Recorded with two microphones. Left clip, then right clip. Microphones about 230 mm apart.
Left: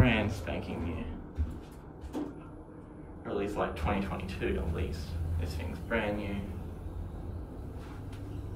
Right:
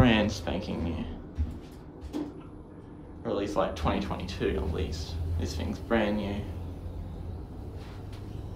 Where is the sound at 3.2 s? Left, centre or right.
Centre.